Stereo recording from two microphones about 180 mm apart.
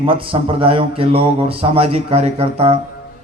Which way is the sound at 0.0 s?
30° right (ahead or behind).